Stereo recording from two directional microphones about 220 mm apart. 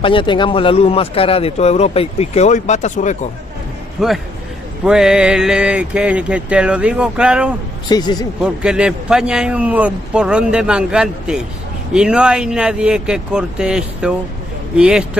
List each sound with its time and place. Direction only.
0.0 s speech: 20° left (ahead or behind)
4.0 s a man's voice: centre (ahead or behind)
7.9 s speech: 20° left (ahead or behind)
8.4 s a man's voice: 5° right (ahead or behind)